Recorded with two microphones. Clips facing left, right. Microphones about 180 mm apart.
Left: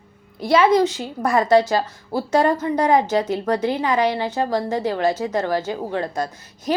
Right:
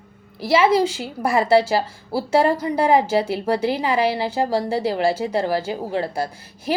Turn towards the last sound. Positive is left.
turn(degrees=-10)  # may be behind; listen again after turning